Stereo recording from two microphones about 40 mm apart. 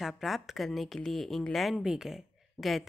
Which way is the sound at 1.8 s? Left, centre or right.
Centre.